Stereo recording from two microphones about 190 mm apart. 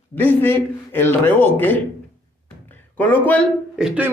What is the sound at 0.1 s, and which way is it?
A man's voice, 10° left (ahead or behind).